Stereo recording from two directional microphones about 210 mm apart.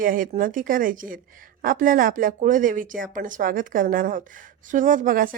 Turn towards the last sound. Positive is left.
turn(degrees=-40)  # may be behind; listen again after turning